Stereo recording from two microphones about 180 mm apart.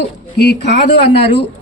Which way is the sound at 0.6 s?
70° left (ahead or behind).